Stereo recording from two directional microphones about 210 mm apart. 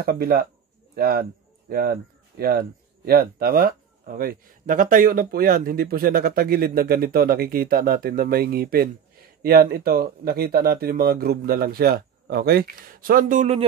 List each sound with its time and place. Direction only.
0.0 s speech: 45° right (ahead or behind)